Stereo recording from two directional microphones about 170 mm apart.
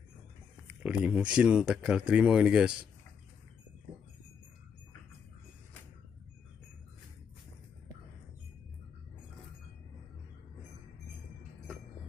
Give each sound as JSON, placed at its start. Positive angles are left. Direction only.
{"t": 0.8, "sound": "speech", "side_deg": -5}